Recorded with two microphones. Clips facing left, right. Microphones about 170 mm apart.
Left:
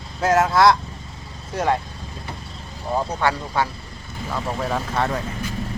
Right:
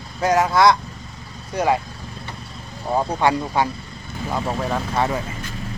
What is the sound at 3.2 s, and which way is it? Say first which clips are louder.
Speech: right 3 dB; 15° right (ahead or behind).